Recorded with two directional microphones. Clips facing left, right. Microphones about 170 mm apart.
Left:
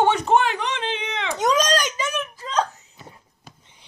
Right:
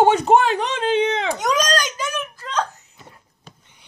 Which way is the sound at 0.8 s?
35° right (ahead or behind).